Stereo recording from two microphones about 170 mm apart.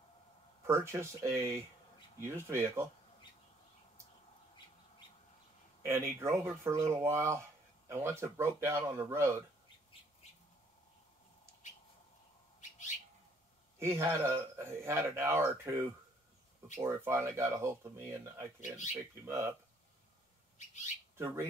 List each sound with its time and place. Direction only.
0.7 s speech: 15° right (ahead or behind)
5.8 s a sound: 15° right (ahead or behind)
6.2 s speech: 15° right (ahead or behind)
12.5 s bird: 45° left (ahead or behind)
13.7 s speech: 15° right (ahead or behind)